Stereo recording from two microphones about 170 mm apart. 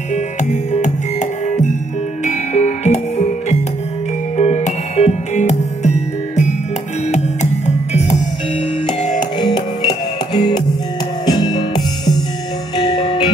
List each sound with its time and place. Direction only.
0.1 s music: 45° left (ahead or behind)
7.6 s music: 40° left (ahead or behind)
9.4 s music: 25° left (ahead or behind)